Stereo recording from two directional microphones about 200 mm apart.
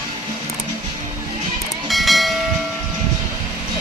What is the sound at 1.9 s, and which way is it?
Train, centre (ahead or behind).